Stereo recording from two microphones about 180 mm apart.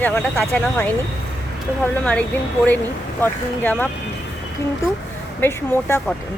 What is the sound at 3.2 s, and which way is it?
Speech, 10° left (ahead or behind).